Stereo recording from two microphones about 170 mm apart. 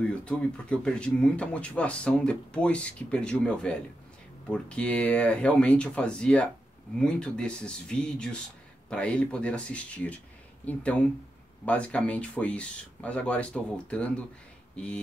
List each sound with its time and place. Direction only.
0.1 s speech: 5° left (ahead or behind)